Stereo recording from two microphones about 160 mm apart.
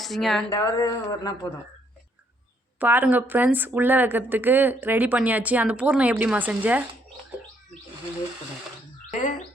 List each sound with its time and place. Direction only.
0.0 s speech: centre (ahead or behind)
0.5 s a man's voice: 20° left (ahead or behind)
2.7 s a woman's voice: 10° right (ahead or behind)
9.0 s chirp: 50° left (ahead or behind)